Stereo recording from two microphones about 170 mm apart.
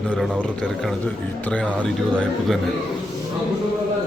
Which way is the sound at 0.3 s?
5° right (ahead or behind).